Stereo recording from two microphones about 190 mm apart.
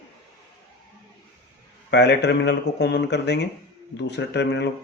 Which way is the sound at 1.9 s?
65° left (ahead or behind).